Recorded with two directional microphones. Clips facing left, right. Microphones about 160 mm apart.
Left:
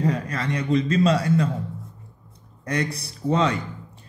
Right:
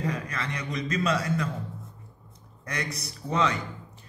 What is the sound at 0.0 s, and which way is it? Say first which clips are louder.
Speech: left 7 dB; 35° left (ahead or behind).